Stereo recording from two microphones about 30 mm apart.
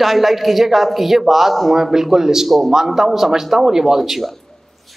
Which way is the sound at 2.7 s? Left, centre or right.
Centre.